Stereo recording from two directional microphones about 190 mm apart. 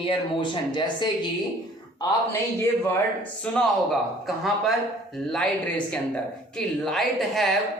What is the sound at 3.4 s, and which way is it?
Speech, 5° left (ahead or behind).